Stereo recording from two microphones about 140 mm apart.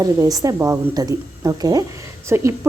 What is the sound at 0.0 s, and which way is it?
A woman's voice, 25° right (ahead or behind).